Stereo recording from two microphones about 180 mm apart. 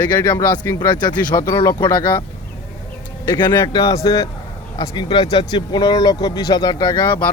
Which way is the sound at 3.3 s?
25° left (ahead or behind).